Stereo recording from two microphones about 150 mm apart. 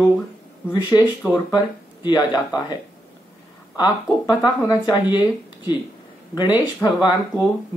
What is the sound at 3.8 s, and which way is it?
Speech, 30° left (ahead or behind).